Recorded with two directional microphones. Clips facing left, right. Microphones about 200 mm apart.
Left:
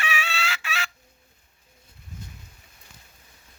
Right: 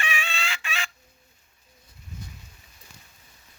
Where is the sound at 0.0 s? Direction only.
5° left (ahead or behind).